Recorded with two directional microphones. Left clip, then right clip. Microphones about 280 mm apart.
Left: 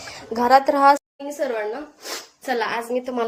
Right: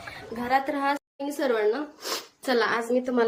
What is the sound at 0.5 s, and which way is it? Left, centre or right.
Speech, left.